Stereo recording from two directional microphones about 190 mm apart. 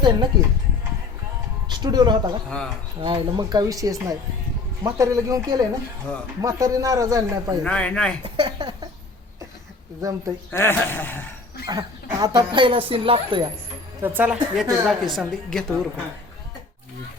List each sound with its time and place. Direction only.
0.0 s speech: 25° right (ahead or behind)
1.6 s a man's voice: 20° right (ahead or behind)
7.6 s a man's voice: 5° left (ahead or behind)
8.2 s speech: 25° right (ahead or behind)
10.0 s a man's voice: 15° right (ahead or behind)
10.5 s a man's voice: 10° left (ahead or behind)
11.6 s speech: 20° right (ahead or behind)
14.0 s a woman's voice: 10° right (ahead or behind)